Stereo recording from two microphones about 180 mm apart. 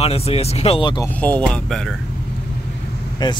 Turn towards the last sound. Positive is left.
turn(degrees=25)  # may be behind; listen again after turning